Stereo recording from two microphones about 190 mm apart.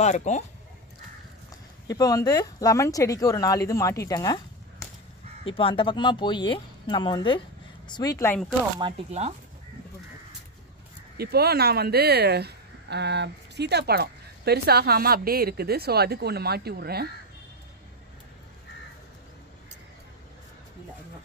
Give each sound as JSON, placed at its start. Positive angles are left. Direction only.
{"t": 0.0, "sound": "speech", "side_deg": 40}
{"t": 1.9, "sound": "speech", "side_deg": 20}
{"t": 8.8, "sound": "speech", "side_deg": -25}
{"t": 11.1, "sound": "speech", "side_deg": -55}